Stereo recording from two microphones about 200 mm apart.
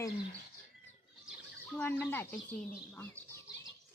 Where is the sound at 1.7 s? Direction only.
10° left (ahead or behind).